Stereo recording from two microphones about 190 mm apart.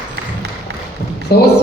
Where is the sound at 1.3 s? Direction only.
55° left (ahead or behind).